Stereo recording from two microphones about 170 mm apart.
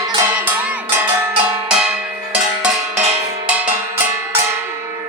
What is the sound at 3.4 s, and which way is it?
Cowbell, 10° right (ahead or behind).